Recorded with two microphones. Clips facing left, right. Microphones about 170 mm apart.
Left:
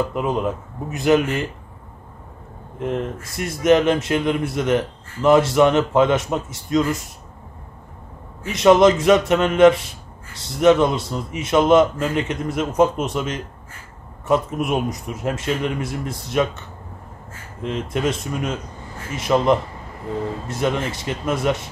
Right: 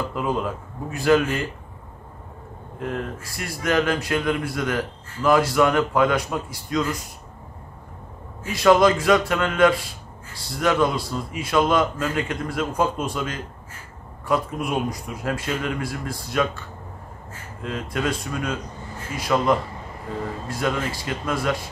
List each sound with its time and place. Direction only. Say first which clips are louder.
0.1 s a man's voice: left 3 dB; 20° left (ahead or behind)
2.8 s a man's voice: left 4 dB; 20° left (ahead or behind)
8.5 s a man's voice: left 3 dB; 20° left (ahead or behind)